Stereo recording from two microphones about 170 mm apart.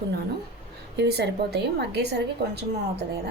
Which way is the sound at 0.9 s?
75° right (ahead or behind).